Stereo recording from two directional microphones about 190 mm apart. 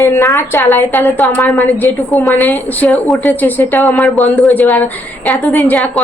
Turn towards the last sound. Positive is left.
turn(degrees=5)  # may be behind; listen again after turning